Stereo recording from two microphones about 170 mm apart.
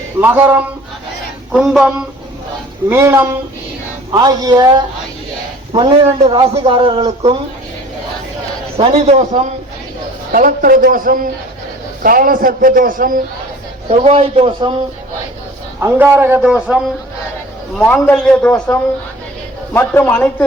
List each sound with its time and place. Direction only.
0.2 s a man's voice: 10° right (ahead or behind)
2.9 s a man's voice: 15° right (ahead or behind)
5.7 s a man's voice: 30° right (ahead or behind)
8.8 s a man's voice: 40° right (ahead or behind)
10.3 s a man's voice: 55° right (ahead or behind)
13.8 s a man's voice: 35° right (ahead or behind)
15.8 s a man's voice: 15° right (ahead or behind)
17.7 s a man's voice: 5° left (ahead or behind)